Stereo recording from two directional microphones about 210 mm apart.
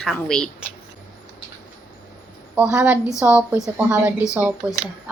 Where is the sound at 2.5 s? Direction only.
5° right (ahead or behind).